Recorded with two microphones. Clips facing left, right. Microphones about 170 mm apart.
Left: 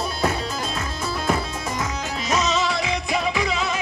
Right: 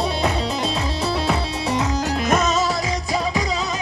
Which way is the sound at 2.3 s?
50° right (ahead or behind).